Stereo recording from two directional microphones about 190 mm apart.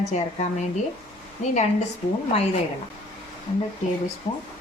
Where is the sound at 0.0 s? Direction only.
35° left (ahead or behind).